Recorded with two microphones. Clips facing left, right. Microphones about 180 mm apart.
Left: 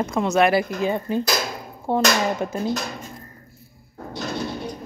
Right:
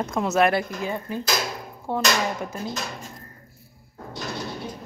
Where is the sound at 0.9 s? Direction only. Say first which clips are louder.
Left 5 dB; 25° left (ahead or behind).